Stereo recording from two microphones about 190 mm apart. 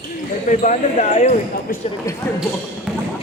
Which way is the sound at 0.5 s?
40° left (ahead or behind).